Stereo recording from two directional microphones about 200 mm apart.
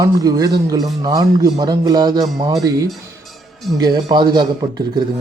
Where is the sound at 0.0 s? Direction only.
20° right (ahead or behind).